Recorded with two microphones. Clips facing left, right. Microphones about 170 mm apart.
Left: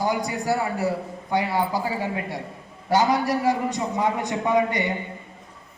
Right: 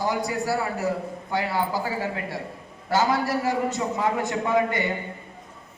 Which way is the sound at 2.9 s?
15° left (ahead or behind).